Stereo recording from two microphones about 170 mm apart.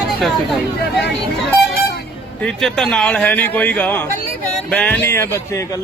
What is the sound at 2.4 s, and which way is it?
Speech, centre (ahead or behind).